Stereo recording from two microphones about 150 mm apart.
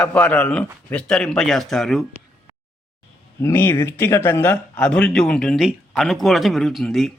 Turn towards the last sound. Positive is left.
turn(degrees=0)  # may be behind; listen again after turning